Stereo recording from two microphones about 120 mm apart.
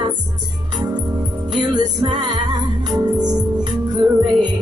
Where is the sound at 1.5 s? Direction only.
40° right (ahead or behind).